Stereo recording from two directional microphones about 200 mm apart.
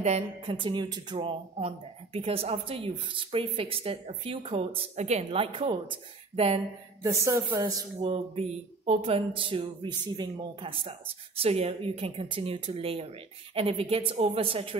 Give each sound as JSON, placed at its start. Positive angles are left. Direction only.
{"t": 0.0, "sound": "speech", "side_deg": -30}
{"t": 7.0, "sound": "speech", "side_deg": -15}